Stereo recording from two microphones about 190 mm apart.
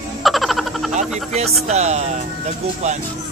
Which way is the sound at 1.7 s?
35° right (ahead or behind).